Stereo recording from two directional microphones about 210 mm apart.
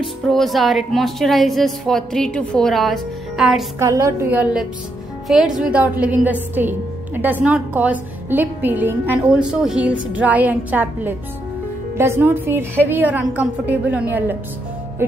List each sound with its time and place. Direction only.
0.0 s a woman's voice: centre (ahead or behind)
3.8 s a woman's voice: 15° right (ahead or behind)